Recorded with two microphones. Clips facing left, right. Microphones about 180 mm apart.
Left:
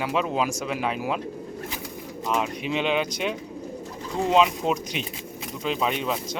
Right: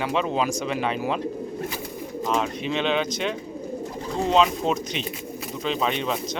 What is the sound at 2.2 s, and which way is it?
Speech, 5° left (ahead or behind).